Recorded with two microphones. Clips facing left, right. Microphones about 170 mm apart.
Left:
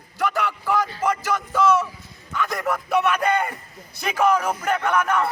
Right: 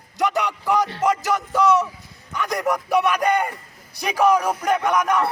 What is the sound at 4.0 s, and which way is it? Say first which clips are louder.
Speech: right 2 dB; 15° right (ahead or behind).